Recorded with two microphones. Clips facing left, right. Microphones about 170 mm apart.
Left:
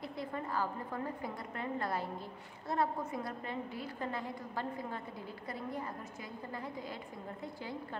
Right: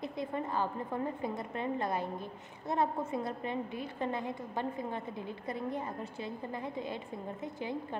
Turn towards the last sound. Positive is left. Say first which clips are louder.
# right 5 dB
turn(degrees=-20)  # may be behind; listen again after turning